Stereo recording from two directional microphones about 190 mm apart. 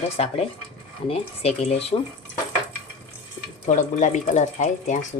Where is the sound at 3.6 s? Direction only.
40° left (ahead or behind).